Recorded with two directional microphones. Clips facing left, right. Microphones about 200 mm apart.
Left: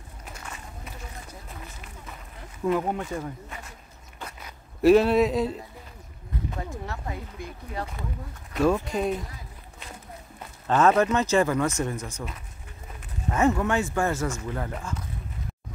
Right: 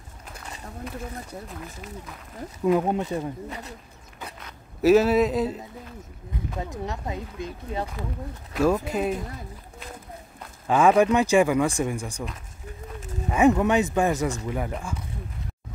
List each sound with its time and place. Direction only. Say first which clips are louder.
2.6 s speech: right 3 dB; 20° right (ahead or behind)
4.8 s speech: even; centre (ahead or behind)
6.7 s speech: right 3 dB; 20° right (ahead or behind)
8.5 s speech: right 1 dB; 5° right (ahead or behind)
10.7 s speech: right 2 dB; 10° right (ahead or behind)
13.3 s speech: right 4 dB; 15° right (ahead or behind)